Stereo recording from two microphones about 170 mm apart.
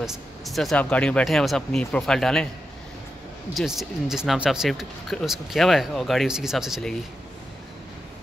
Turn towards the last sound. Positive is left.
turn(degrees=0)  # may be behind; listen again after turning